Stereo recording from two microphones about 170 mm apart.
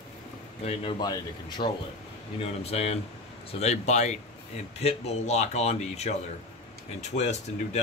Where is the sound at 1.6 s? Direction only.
45° left (ahead or behind).